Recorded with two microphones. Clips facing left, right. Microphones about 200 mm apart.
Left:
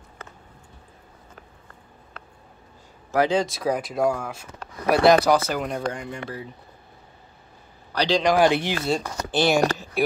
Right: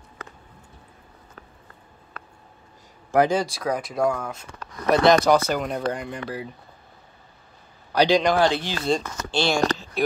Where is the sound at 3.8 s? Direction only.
25° left (ahead or behind).